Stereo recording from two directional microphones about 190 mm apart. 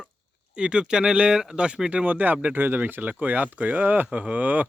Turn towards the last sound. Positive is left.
turn(degrees=-10)  # may be behind; listen again after turning